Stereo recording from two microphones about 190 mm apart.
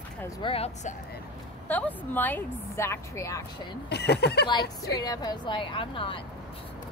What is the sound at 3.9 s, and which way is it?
Speech, 60° left (ahead or behind).